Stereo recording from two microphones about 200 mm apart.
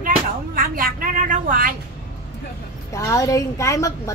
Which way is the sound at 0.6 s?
45° right (ahead or behind).